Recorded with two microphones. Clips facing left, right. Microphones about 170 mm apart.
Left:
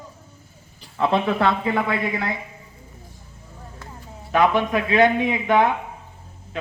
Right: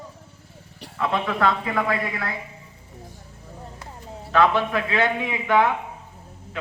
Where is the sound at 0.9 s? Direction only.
30° left (ahead or behind).